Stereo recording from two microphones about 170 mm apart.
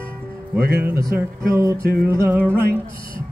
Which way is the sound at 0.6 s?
65° right (ahead or behind).